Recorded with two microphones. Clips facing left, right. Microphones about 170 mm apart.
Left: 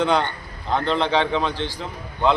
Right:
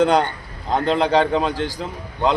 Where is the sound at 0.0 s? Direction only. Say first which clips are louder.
Right 4 dB; 40° right (ahead or behind).